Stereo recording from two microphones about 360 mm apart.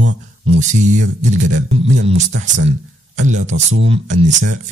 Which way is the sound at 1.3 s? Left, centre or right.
Right.